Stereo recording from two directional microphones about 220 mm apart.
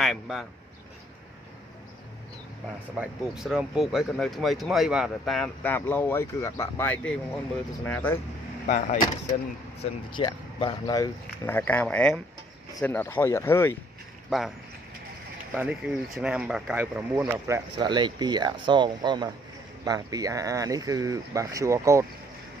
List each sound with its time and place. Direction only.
0.0 s speech: centre (ahead or behind)
3.0 s speech: 5° right (ahead or behind)
8.6 s speech: 35° left (ahead or behind)
9.8 s speech: 20° left (ahead or behind)
14.3 s speech: centre (ahead or behind)
15.5 s speech: 5° right (ahead or behind)